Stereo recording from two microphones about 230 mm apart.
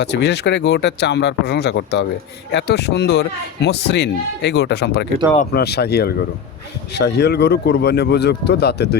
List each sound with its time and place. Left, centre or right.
0.0 s speech: left